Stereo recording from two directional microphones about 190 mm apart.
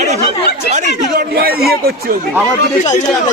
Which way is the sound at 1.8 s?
50° right (ahead or behind).